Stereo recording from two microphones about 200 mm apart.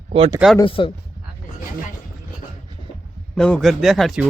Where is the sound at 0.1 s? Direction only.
30° right (ahead or behind).